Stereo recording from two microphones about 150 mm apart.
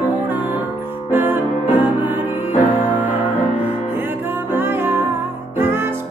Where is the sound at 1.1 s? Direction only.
15° right (ahead or behind).